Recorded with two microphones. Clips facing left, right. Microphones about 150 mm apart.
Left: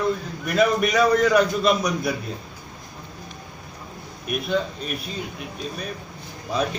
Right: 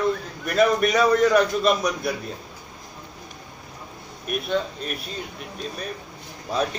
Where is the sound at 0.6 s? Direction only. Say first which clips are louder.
Even; centre (ahead or behind).